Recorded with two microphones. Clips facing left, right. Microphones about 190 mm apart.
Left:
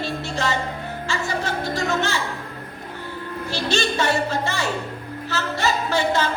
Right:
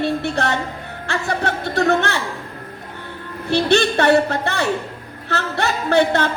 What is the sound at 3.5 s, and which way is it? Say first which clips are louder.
Speech: right 8 dB; 60° right (ahead or behind).